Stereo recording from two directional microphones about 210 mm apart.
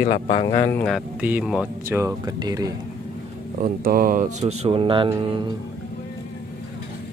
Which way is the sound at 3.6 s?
45° right (ahead or behind).